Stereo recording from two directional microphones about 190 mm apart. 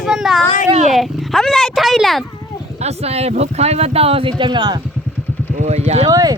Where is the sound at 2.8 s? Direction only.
35° right (ahead or behind).